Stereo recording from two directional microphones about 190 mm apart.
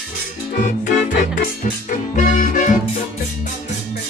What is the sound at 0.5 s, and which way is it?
Music, 50° left (ahead or behind).